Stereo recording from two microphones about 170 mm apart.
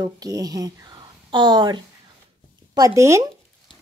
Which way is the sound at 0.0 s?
20° right (ahead or behind).